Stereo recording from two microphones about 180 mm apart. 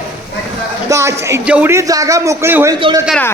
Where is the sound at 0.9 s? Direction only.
15° right (ahead or behind).